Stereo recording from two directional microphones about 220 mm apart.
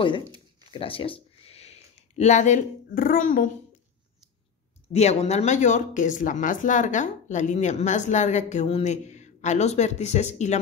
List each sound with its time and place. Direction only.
0.7 s speech: 25° left (ahead or behind)
4.9 s speech: 30° left (ahead or behind)